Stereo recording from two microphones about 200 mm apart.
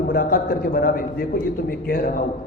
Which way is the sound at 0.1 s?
45° left (ahead or behind).